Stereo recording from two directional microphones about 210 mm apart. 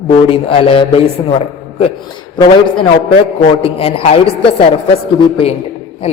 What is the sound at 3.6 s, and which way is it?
A man's voice, 25° left (ahead or behind).